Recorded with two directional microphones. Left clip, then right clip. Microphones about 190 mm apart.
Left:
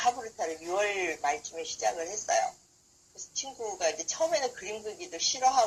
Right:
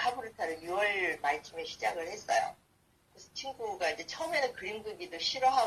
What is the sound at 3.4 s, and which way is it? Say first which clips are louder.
A woman's voice: left 2 dB; 35° left (ahead or behind).